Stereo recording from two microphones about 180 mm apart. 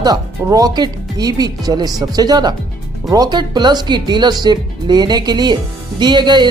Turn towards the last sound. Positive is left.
turn(degrees=-25)  # may be behind; listen again after turning